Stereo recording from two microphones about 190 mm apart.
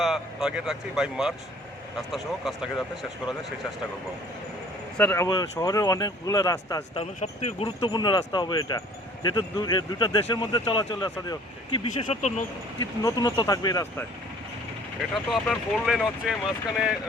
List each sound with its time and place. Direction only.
0.0 s speech: centre (ahead or behind)
4.9 s speech: 10° left (ahead or behind)
7.0 s speech: 35° left (ahead or behind)
15.1 s speech: centre (ahead or behind)